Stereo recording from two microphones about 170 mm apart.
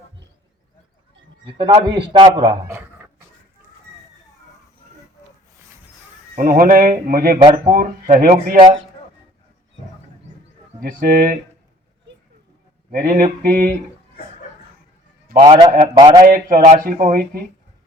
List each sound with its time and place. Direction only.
1.5 s a man's voice: 25° right (ahead or behind)
2.6 s a sound: 10° right (ahead or behind)
6.3 s speech: 55° right (ahead or behind)
10.8 s speech: 55° right (ahead or behind)
12.9 s speech: 55° right (ahead or behind)
15.4 s a man's voice: 25° right (ahead or behind)
16.2 s speech: 55° right (ahead or behind)